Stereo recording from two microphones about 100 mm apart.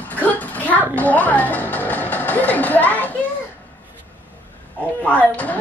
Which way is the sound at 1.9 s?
15° left (ahead or behind).